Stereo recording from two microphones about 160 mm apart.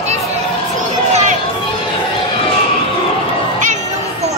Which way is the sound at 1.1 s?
45° right (ahead or behind).